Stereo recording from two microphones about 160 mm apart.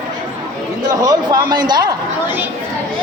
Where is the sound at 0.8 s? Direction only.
25° right (ahead or behind).